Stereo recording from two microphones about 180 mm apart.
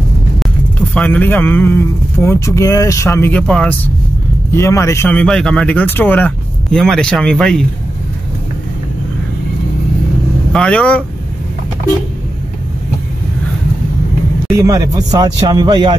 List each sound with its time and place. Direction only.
0.9 s speech: 10° left (ahead or behind)
10.5 s speech: 5° left (ahead or behind)
14.5 s speech: 15° right (ahead or behind)